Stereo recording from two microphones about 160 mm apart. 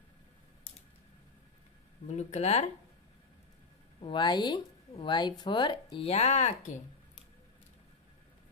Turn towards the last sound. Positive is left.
turn(degrees=45)  # may be behind; listen again after turning